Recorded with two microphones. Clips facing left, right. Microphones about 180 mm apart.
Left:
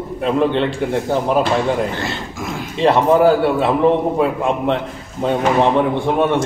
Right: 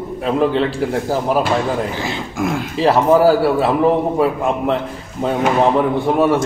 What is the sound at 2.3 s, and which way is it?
Speech, 55° right (ahead or behind).